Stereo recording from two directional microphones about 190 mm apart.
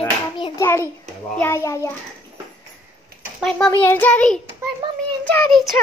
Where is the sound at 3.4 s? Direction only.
5° left (ahead or behind).